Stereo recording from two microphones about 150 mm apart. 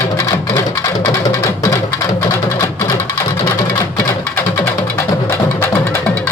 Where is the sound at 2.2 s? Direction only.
20° left (ahead or behind).